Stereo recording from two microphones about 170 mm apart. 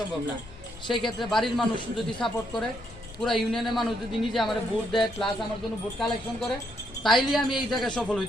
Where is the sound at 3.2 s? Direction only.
Centre (ahead or behind).